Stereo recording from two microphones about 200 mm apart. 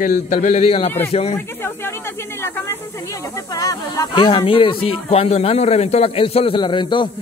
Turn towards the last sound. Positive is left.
turn(degrees=25)  # may be behind; listen again after turning